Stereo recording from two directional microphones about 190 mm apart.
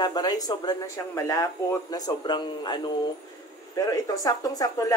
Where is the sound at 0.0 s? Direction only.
20° left (ahead or behind).